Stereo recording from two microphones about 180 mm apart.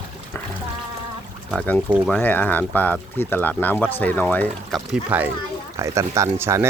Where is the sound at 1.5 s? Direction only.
10° left (ahead or behind).